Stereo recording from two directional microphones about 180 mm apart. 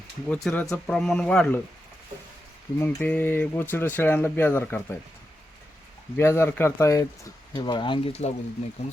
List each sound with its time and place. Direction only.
0.3 s speech: 5° left (ahead or behind)
2.8 s speech: 10° left (ahead or behind)
6.1 s speech: 15° left (ahead or behind); by 8.3 s 35° left (ahead or behind)